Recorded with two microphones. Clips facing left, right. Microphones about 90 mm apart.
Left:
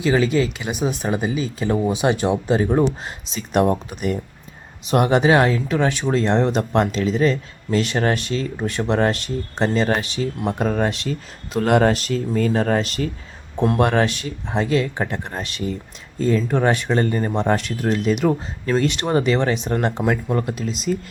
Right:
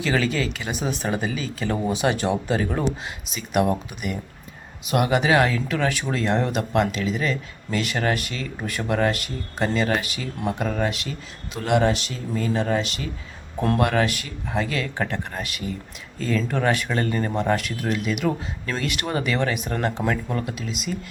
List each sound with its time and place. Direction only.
0.0 s speech: 20° left (ahead or behind); by 13.1 s 40° left (ahead or behind)
13.7 s speech: 30° left (ahead or behind)